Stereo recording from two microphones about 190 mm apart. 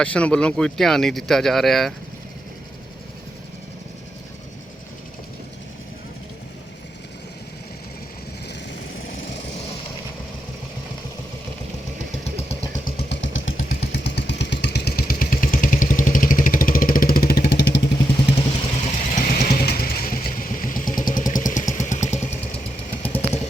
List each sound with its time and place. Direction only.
0.0 s speech: 5° left (ahead or behind)
13.0 s vehicle: 70° left (ahead or behind)
13.6 s motorcycle: 55° left (ahead or behind)
18.3 s vehicle: 30° left (ahead or behind)